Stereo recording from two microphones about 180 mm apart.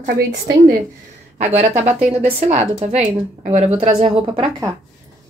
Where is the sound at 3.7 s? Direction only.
35° right (ahead or behind).